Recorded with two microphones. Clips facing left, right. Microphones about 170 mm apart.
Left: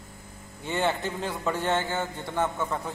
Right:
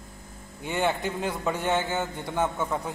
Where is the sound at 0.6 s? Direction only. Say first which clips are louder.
Right 1 dB; 15° right (ahead or behind).